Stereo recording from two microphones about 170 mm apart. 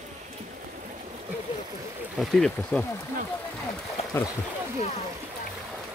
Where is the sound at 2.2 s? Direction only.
5° left (ahead or behind).